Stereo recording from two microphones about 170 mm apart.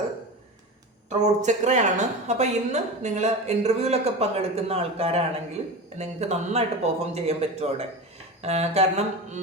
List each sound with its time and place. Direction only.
1.2 s a woman's voice: 45° right (ahead or behind)